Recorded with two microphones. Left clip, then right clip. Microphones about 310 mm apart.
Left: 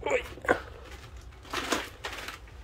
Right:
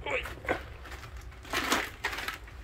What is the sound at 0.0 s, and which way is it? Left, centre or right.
Dog, centre.